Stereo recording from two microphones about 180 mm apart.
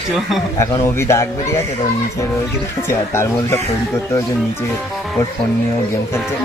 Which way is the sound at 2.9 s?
15° left (ahead or behind).